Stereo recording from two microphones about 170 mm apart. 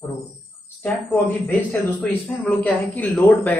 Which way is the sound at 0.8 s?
10° left (ahead or behind).